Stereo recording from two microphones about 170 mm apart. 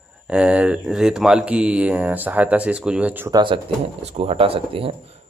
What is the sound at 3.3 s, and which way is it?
Speech, 30° right (ahead or behind).